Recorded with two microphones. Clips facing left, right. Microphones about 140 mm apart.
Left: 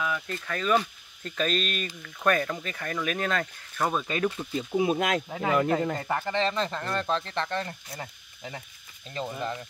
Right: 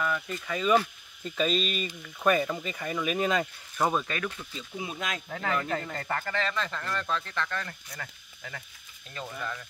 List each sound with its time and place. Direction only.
0.0 s speech: centre (ahead or behind)
4.1 s speech: 35° left (ahead or behind)
4.9 s speech: 55° left (ahead or behind)
5.3 s speech: 15° left (ahead or behind)